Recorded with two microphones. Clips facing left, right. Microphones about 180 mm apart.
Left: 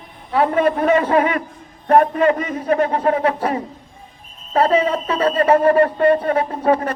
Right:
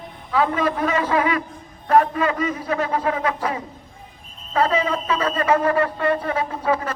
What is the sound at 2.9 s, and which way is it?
Speech, 35° left (ahead or behind).